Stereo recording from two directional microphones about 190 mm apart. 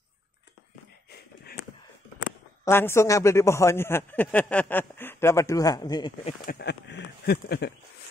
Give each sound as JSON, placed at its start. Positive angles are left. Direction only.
{"t": 2.6, "sound": "a man's voice", "side_deg": 10}
{"t": 6.4, "sound": "speech", "side_deg": 60}